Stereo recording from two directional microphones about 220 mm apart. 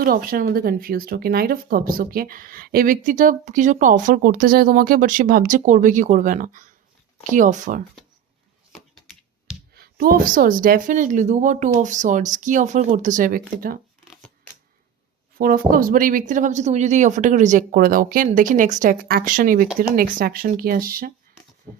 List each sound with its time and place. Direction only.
0.0 s speech: 40° right (ahead or behind)
9.7 s speech: 45° right (ahead or behind)
15.4 s speech: 40° right (ahead or behind)